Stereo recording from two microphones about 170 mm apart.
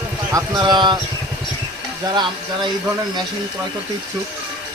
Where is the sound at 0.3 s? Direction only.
20° right (ahead or behind).